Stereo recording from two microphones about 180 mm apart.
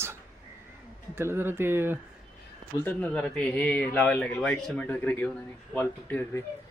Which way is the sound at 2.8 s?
10° left (ahead or behind).